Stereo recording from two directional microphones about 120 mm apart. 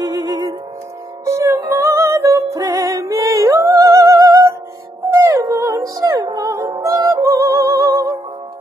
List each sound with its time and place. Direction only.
0.0 s music: 25° right (ahead or behind)